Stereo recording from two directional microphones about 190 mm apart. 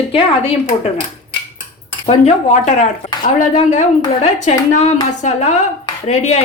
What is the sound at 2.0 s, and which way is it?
A woman's voice, 35° left (ahead or behind).